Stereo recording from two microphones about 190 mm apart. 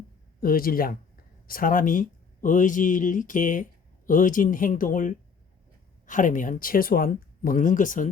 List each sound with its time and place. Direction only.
0.3 s speech: 50° left (ahead or behind)